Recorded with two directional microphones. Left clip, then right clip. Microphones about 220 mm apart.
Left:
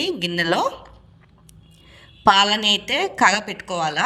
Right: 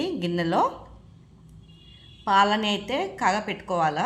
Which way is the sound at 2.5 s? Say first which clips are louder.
Left 6 dB; 45° left (ahead or behind).